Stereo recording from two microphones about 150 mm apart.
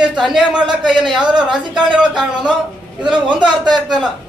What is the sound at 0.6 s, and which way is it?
Speech, 30° right (ahead or behind).